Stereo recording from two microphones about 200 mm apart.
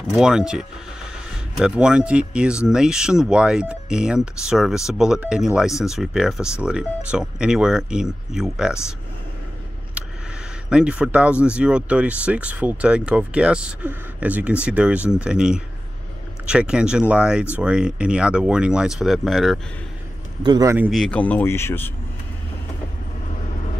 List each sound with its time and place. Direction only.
0.0 s speech: 5° right (ahead or behind)
10.0 s a sound: 5° right (ahead or behind)
10.7 s speech: 5° right (ahead or behind)
20.4 s a man's voice: 20° right (ahead or behind)
20.7 s a man's voice: 10° right (ahead or behind)
21.0 s speech: 5° left (ahead or behind)